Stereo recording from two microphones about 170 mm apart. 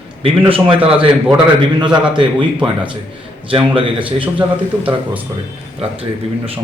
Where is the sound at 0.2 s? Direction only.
30° right (ahead or behind).